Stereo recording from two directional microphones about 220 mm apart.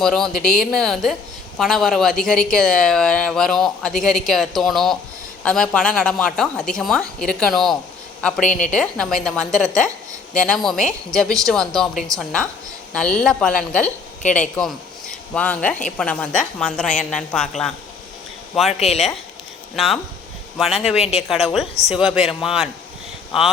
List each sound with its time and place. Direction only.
0.0 s speech: centre (ahead or behind)
8.4 s a woman's voice: 35° left (ahead or behind)
8.7 s speech: 5° left (ahead or behind)
18.7 s speech: 30° left (ahead or behind)
19.7 s speech: centre (ahead or behind)
20.9 s speech: 25° left (ahead or behind)
21.2 s speech: centre (ahead or behind)